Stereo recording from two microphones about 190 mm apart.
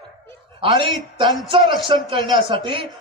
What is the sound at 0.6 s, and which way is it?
A man's voice, 25° right (ahead or behind).